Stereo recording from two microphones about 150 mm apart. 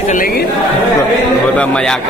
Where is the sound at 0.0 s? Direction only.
65° left (ahead or behind); by 0.5 s 80° left.